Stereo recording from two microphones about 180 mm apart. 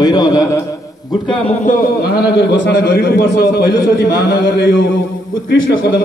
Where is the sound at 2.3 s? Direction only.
80° left.